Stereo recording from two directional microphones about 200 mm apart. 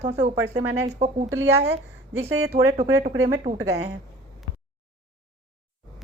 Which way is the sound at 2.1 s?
10° right (ahead or behind).